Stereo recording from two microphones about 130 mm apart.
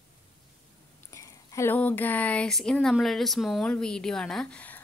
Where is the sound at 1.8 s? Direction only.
15° left (ahead or behind).